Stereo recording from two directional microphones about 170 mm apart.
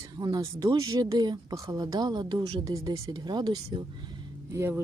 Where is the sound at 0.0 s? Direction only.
25° right (ahead or behind).